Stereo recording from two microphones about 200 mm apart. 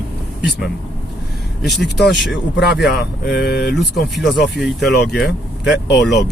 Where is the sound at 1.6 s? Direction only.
Centre (ahead or behind).